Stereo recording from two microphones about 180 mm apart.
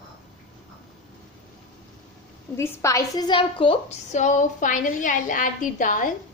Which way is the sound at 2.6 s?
15° left (ahead or behind).